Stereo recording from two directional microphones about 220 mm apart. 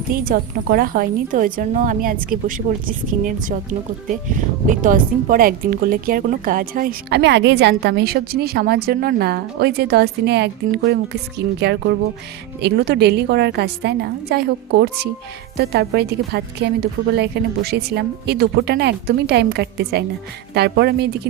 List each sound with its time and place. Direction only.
0.1 s a woman's voice: 40° right (ahead or behind)
12.6 s a woman's voice: 50° right (ahead or behind)